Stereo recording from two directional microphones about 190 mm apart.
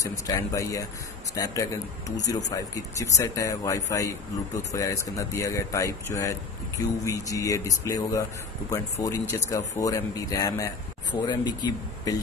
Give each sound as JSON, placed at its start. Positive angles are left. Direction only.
{"t": 0.0, "sound": "speech", "side_deg": 15}